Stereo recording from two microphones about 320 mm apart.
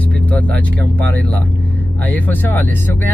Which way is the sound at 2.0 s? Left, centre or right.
Centre.